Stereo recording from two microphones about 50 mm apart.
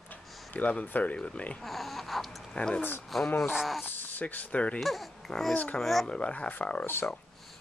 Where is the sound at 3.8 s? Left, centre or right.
Left.